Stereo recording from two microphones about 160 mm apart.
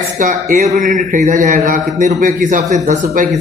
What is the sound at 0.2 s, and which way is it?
Speech, 55° right (ahead or behind).